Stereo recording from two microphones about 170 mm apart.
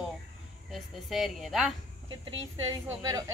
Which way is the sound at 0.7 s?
Centre (ahead or behind).